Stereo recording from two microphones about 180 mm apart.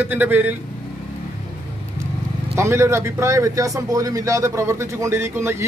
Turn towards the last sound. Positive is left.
turn(degrees=-15)  # may be behind; listen again after turning